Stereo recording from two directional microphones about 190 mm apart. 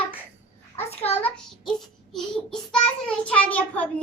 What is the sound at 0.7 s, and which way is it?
Speech, 30° left (ahead or behind).